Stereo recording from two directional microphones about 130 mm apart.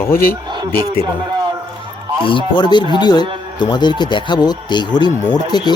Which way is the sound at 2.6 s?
35° left (ahead or behind).